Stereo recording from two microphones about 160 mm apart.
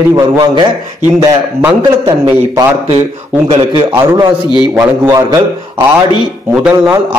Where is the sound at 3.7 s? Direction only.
25° right (ahead or behind).